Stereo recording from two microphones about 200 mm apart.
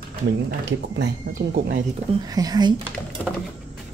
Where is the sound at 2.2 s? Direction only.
20° right (ahead or behind).